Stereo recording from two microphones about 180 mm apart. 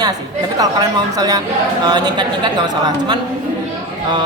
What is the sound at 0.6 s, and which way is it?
Speech, 20° right (ahead or behind).